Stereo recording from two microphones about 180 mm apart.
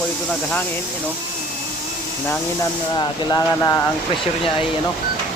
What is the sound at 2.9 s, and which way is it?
Speech, 20° left (ahead or behind).